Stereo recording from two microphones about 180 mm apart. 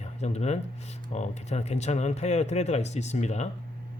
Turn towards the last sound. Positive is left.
turn(degrees=40)  # may be behind; listen again after turning